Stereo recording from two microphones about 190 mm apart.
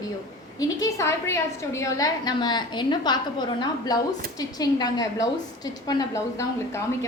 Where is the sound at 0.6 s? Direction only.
15° left (ahead or behind).